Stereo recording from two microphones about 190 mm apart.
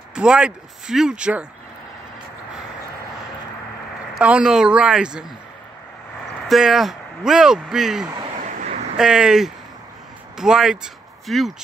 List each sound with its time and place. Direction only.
0.1 s speech: 5° right (ahead or behind)
4.1 s speech: 5° right (ahead or behind)
6.4 s speech: centre (ahead or behind)
8.5 s vehicle: 40° right (ahead or behind)
8.9 s speech: 5° right (ahead or behind)